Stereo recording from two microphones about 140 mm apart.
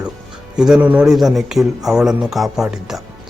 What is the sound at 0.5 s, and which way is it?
A man's voice, 5° right (ahead or behind).